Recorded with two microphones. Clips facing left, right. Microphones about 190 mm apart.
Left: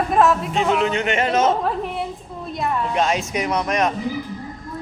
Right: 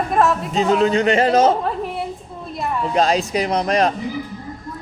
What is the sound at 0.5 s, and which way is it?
A woman's voice, 35° right (ahead or behind).